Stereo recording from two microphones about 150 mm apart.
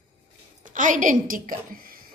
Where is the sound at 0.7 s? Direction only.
60° right (ahead or behind).